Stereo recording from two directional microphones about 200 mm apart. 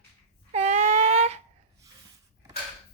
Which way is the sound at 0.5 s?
35° right (ahead or behind).